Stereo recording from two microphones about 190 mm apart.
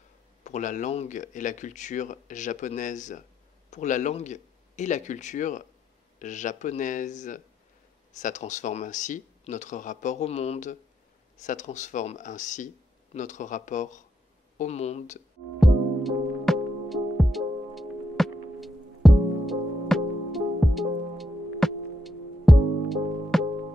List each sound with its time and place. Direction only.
0.4 s speech: 40° left (ahead or behind)
15.6 s music: centre (ahead or behind)